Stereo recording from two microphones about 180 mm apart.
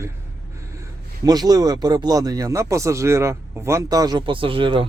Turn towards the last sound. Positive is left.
turn(degrees=-30)  # may be behind; listen again after turning